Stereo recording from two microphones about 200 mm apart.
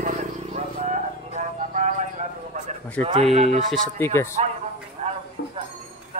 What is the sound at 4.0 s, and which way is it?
Speech, 10° left (ahead or behind).